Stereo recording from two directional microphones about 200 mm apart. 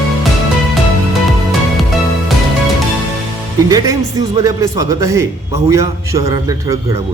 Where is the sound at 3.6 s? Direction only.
15° right (ahead or behind).